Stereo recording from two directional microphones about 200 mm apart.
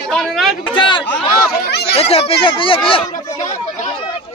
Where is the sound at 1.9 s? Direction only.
30° left (ahead or behind).